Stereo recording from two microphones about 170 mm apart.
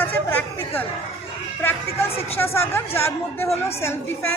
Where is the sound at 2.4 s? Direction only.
15° left (ahead or behind).